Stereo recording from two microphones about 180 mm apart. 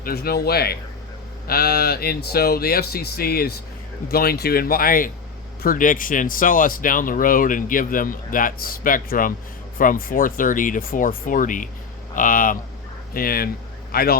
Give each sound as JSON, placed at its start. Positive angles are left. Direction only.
{"t": 0.0, "sound": "speech", "side_deg": 60}